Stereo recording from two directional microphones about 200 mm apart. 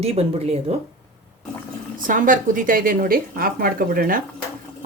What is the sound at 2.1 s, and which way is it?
A woman's voice, 40° right (ahead or behind).